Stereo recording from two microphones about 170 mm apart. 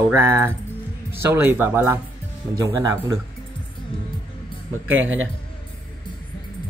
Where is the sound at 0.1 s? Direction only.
15° right (ahead or behind).